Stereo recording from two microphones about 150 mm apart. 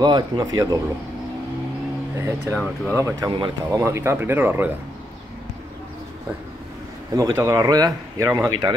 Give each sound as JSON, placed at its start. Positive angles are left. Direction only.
{"t": 0.0, "sound": "a man's voice", "side_deg": -25}
{"t": 2.1, "sound": "a man's voice", "side_deg": -20}
{"t": 2.5, "sound": "speech", "side_deg": 10}
{"t": 3.0, "sound": "a man's voice", "side_deg": -20}
{"t": 7.2, "sound": "a man's voice", "side_deg": -20}